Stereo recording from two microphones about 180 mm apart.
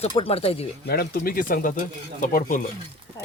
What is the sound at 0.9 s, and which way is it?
Speech, 55° left (ahead or behind).